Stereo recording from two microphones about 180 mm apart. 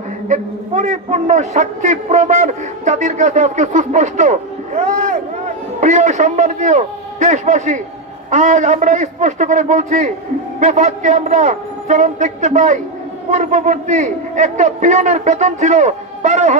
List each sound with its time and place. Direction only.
0.3 s a man's voice: 40° right (ahead or behind)